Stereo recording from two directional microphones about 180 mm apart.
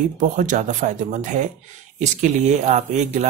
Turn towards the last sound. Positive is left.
turn(degrees=-40)  # may be behind; listen again after turning